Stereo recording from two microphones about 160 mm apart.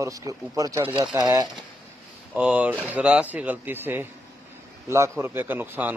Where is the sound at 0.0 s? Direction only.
20° right (ahead or behind).